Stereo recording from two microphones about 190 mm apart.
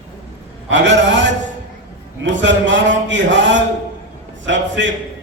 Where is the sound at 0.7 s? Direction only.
70° right (ahead or behind).